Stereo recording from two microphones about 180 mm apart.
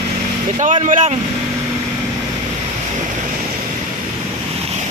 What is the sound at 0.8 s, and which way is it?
Speech, 45° right (ahead or behind).